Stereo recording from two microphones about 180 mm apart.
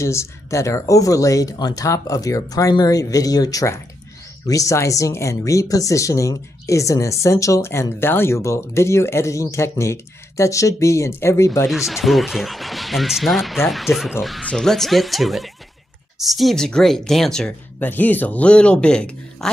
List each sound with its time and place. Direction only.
0.0 s speech: 15° left (ahead or behind)
11.7 s speech: centre (ahead or behind)